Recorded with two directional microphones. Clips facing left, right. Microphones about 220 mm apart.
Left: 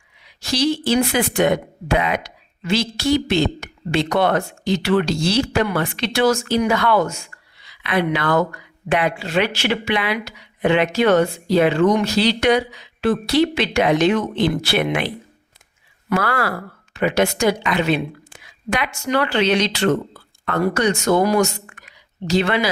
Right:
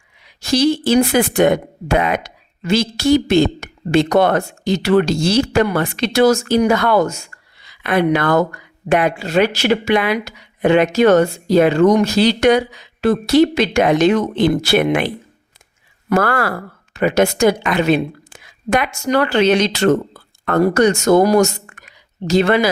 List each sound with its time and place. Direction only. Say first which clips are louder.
0.5 s speech: right 5 dB; 45° right (ahead or behind)
18.3 s a sound: right 6 dB; 45° right (ahead or behind)
19.0 s speech: right 4 dB; 45° right (ahead or behind)